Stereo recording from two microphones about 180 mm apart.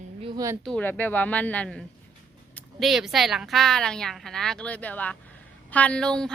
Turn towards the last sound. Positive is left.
turn(degrees=5)  # may be behind; listen again after turning